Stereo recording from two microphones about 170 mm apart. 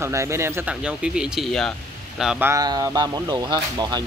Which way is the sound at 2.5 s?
20° right (ahead or behind).